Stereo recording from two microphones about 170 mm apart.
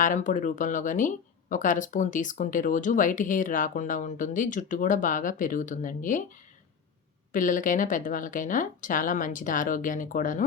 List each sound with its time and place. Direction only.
0.0 s speech: 50° left (ahead or behind)
7.3 s speech: 50° left (ahead or behind)